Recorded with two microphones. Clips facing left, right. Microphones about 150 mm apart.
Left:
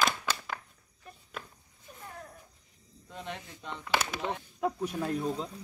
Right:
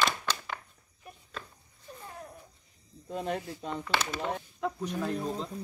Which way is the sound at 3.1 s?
40° right (ahead or behind).